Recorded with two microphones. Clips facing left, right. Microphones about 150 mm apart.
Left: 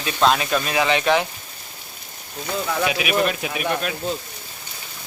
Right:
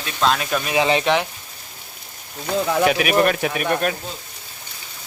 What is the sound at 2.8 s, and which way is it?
Speech, 45° right (ahead or behind).